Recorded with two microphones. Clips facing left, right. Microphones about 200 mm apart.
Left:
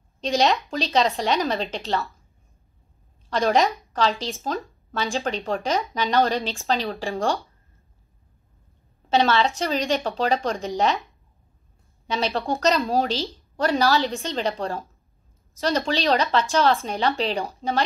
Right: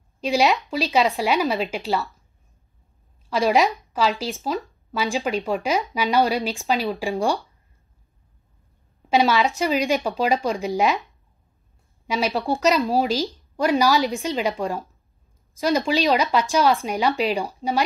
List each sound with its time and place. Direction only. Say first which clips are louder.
0.2 s speech: right 1 dB; 5° right (ahead or behind)
3.3 s speech: right 1 dB; 5° right (ahead or behind)
9.1 s speech: right 1 dB; 15° right (ahead or behind)
12.1 s speech: right 2 dB; 10° right (ahead or behind)
15.9 s speech: even; 15° right (ahead or behind)